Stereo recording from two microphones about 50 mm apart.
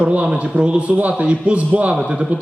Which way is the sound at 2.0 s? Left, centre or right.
Centre.